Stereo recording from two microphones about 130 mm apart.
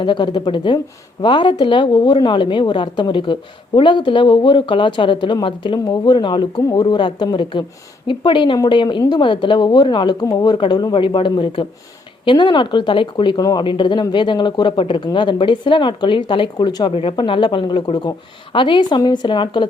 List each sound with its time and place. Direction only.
0.0 s speech: 35° left (ahead or behind)